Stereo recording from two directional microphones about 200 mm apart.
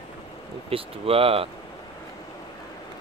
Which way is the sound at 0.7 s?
30° right (ahead or behind).